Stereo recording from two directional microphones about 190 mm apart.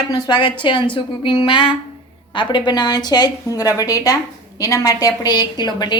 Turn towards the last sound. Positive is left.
turn(degrees=25)  # may be behind; listen again after turning